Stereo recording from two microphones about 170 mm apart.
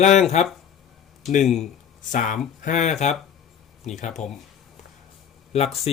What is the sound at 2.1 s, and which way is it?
Speech, 50° left (ahead or behind).